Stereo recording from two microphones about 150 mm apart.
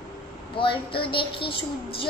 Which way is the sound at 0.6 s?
35° left (ahead or behind).